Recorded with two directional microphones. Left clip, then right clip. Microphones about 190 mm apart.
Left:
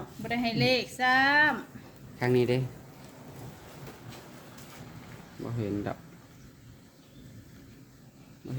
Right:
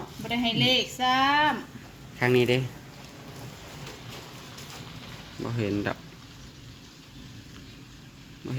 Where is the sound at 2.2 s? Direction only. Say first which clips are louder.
Right 4 dB; 5° left (ahead or behind).